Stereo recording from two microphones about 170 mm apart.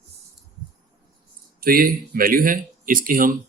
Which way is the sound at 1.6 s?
60° right (ahead or behind).